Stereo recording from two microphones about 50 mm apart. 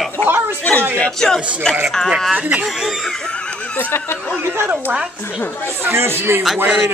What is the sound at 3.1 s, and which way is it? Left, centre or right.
Snicker, left.